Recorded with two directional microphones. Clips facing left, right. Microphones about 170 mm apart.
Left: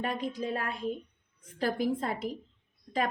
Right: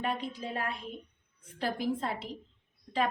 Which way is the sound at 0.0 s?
40° left (ahead or behind).